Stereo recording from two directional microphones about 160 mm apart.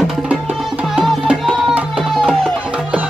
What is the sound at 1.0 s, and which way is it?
Music, 5° right (ahead or behind).